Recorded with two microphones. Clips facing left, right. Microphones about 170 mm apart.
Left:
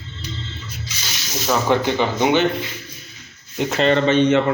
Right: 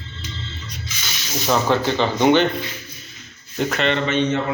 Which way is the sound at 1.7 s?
15° left (ahead or behind).